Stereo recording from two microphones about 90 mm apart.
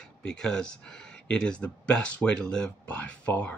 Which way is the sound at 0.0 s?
10° left (ahead or behind).